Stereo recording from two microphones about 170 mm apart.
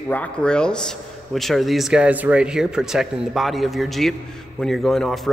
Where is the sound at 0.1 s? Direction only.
5° left (ahead or behind).